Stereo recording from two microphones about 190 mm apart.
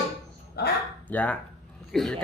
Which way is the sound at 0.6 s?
55° left (ahead or behind).